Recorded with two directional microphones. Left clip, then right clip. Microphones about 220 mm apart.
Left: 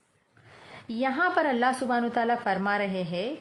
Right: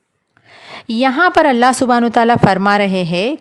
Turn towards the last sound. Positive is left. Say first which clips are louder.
# right 14 dB
turn(degrees=-45)  # may be behind; listen again after turning